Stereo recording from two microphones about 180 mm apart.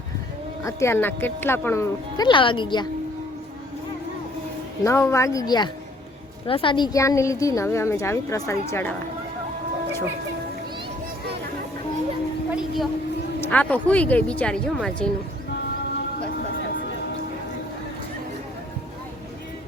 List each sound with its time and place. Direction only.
0.6 s speech: 15° left (ahead or behind)
4.8 s speech: 15° left (ahead or behind)
12.5 s a sound: centre (ahead or behind)
13.5 s speech: 10° left (ahead or behind)